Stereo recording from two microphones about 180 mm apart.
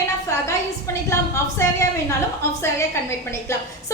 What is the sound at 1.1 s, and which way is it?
Speech, 15° left (ahead or behind).